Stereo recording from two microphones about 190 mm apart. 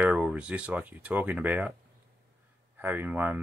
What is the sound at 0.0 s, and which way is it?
Speech, 5° right (ahead or behind).